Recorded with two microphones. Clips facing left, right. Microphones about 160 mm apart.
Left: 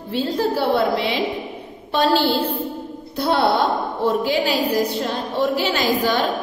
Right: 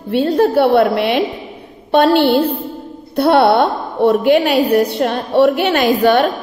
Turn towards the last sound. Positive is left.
turn(degrees=-60)  # may be behind; listen again after turning